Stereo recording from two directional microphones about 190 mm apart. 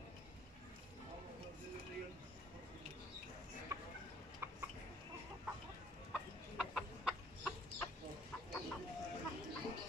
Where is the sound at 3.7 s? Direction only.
20° right (ahead or behind).